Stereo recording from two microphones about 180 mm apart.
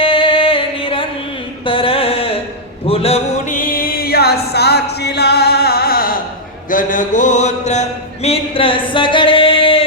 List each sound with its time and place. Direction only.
0.0 s music: 30° left (ahead or behind)
1.6 s a sound: 30° left (ahead or behind)
2.8 s chant: 35° left (ahead or behind); by 6.1 s 55° left (ahead or behind)
6.7 s mantra: 45° left (ahead or behind); by 9.8 s 30° left (ahead or behind)